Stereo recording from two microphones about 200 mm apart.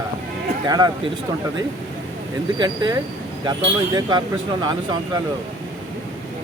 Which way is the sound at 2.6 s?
20° right (ahead or behind).